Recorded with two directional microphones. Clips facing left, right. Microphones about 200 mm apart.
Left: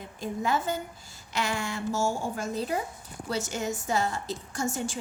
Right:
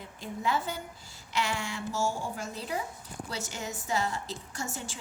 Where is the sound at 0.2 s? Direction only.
45° left (ahead or behind).